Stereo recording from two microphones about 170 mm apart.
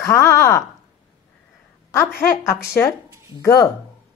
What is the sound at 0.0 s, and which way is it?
Speech, 15° left (ahead or behind).